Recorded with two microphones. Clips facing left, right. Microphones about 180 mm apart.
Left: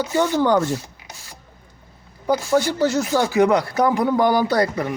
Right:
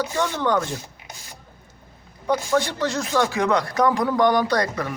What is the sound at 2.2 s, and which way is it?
Speech, 30° left (ahead or behind).